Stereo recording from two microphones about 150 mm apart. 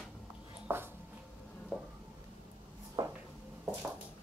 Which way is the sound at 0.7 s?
15° right (ahead or behind).